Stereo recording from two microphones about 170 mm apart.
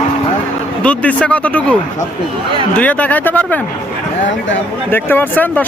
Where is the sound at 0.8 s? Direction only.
10° left (ahead or behind).